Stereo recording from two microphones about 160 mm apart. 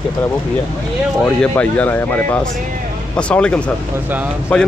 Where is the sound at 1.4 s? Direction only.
10° left (ahead or behind).